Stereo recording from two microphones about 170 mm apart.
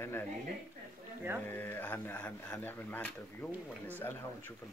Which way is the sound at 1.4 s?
10° left (ahead or behind).